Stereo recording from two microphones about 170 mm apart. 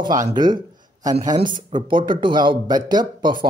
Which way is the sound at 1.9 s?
30° right (ahead or behind).